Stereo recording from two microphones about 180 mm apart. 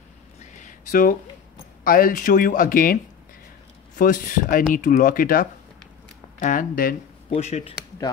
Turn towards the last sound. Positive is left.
turn(degrees=35)  # may be behind; listen again after turning